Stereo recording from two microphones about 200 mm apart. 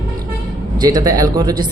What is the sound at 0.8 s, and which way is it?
Speech, 20° right (ahead or behind).